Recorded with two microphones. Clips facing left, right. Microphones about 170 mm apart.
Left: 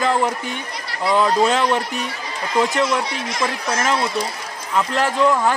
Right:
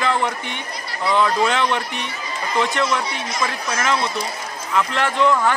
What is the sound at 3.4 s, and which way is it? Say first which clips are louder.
Speech: left 2 dB; 35° left (ahead or behind).